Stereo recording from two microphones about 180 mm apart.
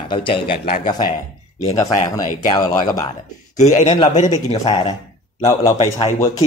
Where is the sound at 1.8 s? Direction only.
40° left (ahead or behind).